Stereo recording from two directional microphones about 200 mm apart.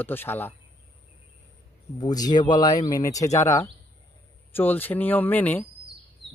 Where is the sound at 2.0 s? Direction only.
20° left (ahead or behind).